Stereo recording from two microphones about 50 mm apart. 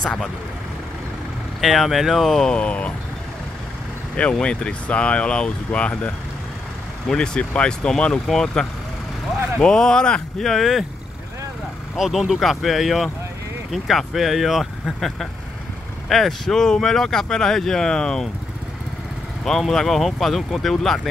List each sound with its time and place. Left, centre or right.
0.0 s speech: centre
1.6 s speech: centre
2.5 s speech: left
4.2 s speech: left
10.4 s speech: centre
12.0 s speech: centre
19.7 s speech: centre